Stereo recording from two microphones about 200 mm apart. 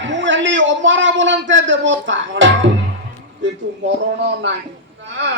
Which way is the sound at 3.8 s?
60° right (ahead or behind).